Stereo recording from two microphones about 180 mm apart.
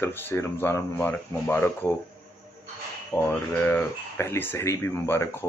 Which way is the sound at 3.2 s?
10° left (ahead or behind).